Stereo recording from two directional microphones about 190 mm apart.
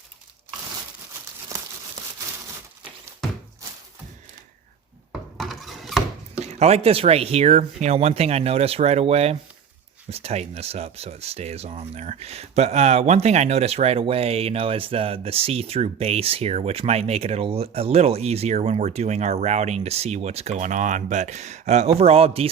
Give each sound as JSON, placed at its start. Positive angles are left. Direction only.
{"t": 1.5, "sound": "crumpling", "side_deg": -15}
{"t": 5.4, "sound": "a sound", "side_deg": 0}
{"t": 6.4, "sound": "speech", "side_deg": -35}